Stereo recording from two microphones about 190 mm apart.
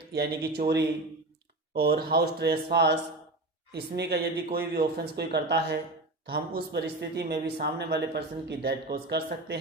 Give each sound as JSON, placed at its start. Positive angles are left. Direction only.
{"t": 0.1, "sound": "speech", "side_deg": -55}